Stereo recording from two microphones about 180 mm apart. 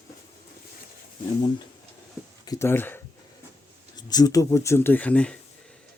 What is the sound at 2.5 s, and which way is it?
Speech, 15° left (ahead or behind).